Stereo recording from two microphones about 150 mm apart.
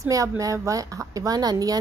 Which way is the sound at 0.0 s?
20° right (ahead or behind).